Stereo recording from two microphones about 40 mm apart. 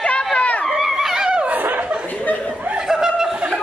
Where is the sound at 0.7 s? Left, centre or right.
Centre.